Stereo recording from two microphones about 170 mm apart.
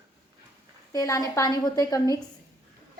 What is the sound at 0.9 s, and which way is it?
A woman's voice, 20° left (ahead or behind).